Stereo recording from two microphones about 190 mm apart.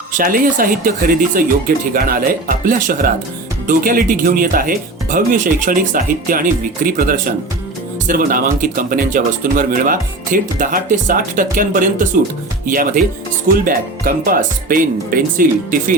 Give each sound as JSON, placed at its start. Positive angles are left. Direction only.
{"t": 0.1, "sound": "speech", "side_deg": -45}